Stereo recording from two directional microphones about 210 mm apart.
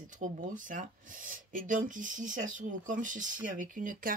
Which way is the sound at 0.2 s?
35° right (ahead or behind).